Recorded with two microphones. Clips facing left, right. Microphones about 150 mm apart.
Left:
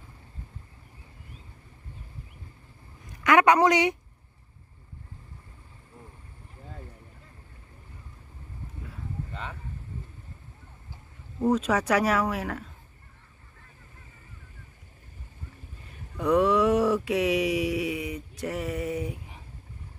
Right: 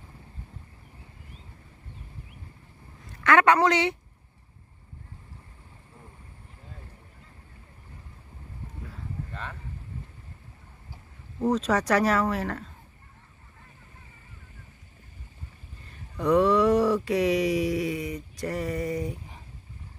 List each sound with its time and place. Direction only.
3.1 s a woman's voice: 15° left (ahead or behind)
9.3 s boat: 10° left (ahead or behind)
11.4 s speech: 10° left (ahead or behind)
15.8 s a sound: 10° left (ahead or behind)